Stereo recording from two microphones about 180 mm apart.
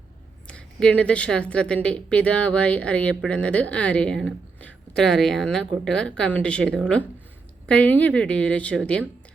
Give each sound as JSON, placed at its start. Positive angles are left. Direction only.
{"t": 0.4, "sound": "a woman's voice", "side_deg": 5}